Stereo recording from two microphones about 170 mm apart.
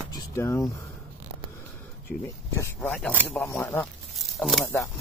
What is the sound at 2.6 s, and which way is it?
Speech, 10° left (ahead or behind).